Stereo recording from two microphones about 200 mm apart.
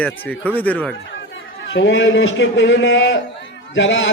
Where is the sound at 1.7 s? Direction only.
70° left (ahead or behind).